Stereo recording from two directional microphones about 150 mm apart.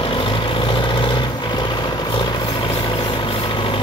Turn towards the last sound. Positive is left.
turn(degrees=35)  # may be behind; listen again after turning